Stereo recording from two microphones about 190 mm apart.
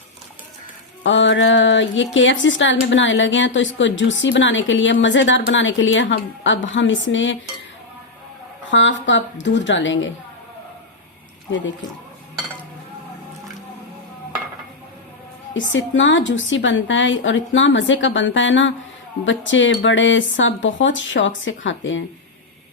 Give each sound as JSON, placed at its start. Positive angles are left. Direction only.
{"t": 1.0, "sound": "a woman's voice", "side_deg": 75}
{"t": 8.7, "sound": "speech", "side_deg": 75}
{"t": 15.5, "sound": "a woman's voice", "side_deg": 80}